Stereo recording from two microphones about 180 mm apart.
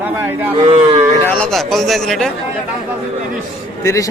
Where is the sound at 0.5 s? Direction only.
35° right (ahead or behind).